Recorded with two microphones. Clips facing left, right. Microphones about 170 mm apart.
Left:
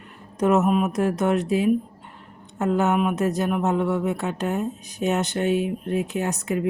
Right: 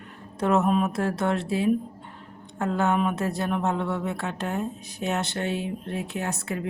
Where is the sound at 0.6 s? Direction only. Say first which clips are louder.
Left 2 dB; 5° left (ahead or behind).